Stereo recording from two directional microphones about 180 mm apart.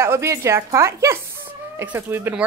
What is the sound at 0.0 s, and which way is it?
Speech, 15° right (ahead or behind).